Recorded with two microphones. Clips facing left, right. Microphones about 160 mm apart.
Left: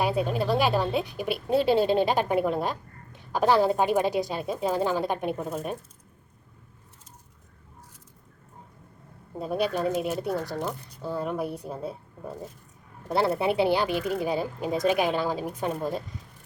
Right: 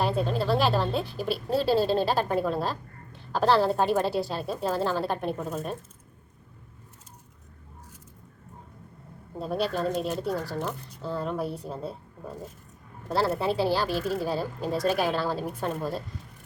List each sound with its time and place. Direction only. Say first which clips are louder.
0.0 s a woman's voice: left 1 dB; 10° left (ahead or behind)
9.3 s a woman's voice: left 1 dB; 10° left (ahead or behind)
13.1 s a woman's voice: left 2 dB; 20° left (ahead or behind)